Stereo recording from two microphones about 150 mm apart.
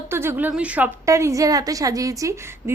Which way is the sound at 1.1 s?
20° right (ahead or behind).